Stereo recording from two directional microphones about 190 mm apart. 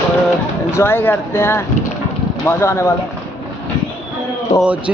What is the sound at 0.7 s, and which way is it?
Speech, 10° left (ahead or behind).